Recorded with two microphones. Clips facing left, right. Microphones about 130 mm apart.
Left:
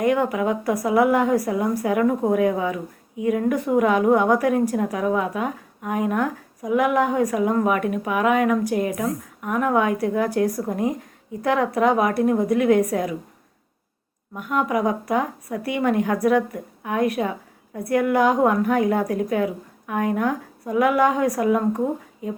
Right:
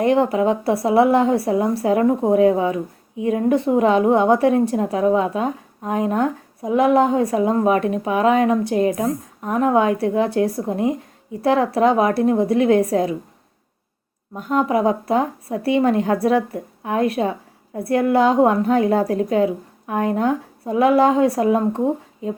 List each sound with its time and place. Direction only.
0.0 s a woman's voice: 30° right (ahead or behind)
14.3 s a woman's voice: 30° right (ahead or behind)